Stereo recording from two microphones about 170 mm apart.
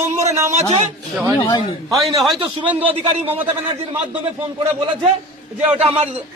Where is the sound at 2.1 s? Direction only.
25° right (ahead or behind).